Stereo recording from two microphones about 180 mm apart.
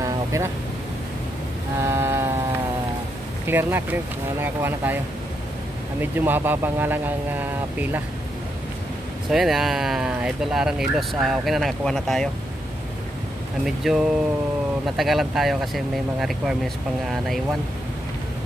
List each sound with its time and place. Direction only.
0.0 s vehicle: 15° right (ahead or behind)
1.8 s a sound: 15° right (ahead or behind)
3.4 s speech: 10° right (ahead or behind)
5.9 s speech: 10° right (ahead or behind)
9.3 s speech: centre (ahead or behind)
13.7 s speech: centre (ahead or behind)